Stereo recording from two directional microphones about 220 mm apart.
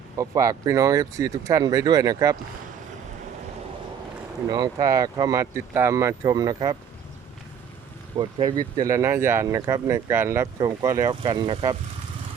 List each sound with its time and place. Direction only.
0.2 s speech: 15° right (ahead or behind)
4.4 s speech: 15° right (ahead or behind)
8.2 s speech: 20° right (ahead or behind)